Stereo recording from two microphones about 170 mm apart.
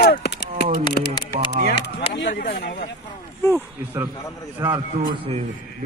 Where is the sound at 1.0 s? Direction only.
65° left (ahead or behind).